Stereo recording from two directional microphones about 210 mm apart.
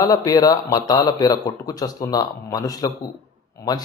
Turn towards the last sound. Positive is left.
turn(degrees=20)  # may be behind; listen again after turning